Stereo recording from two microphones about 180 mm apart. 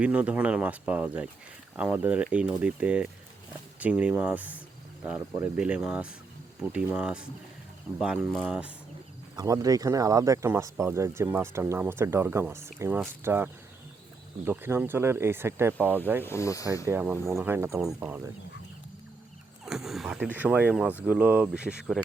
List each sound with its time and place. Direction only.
0.0 s speech: 5° right (ahead or behind)
9.3 s speech: 20° right (ahead or behind)
16.2 s speech: 15° left (ahead or behind)
16.8 s speech: 10° right (ahead or behind)
19.6 s speech: centre (ahead or behind)